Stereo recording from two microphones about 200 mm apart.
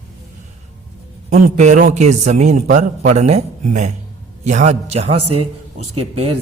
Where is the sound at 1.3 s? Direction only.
35° right (ahead or behind).